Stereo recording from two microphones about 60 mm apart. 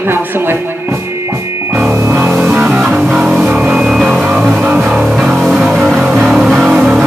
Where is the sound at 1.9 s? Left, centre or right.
Right.